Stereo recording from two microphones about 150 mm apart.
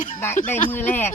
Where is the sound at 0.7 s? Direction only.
15° left (ahead or behind).